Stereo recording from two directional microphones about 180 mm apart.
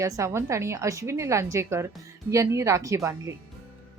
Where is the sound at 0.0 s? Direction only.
15° right (ahead or behind).